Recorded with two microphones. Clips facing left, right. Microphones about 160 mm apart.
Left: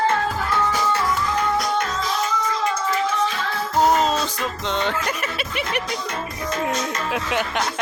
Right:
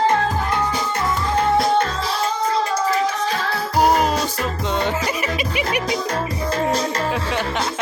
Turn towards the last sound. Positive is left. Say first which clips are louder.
# right 1 dB
turn(degrees=5)  # may be behind; listen again after turning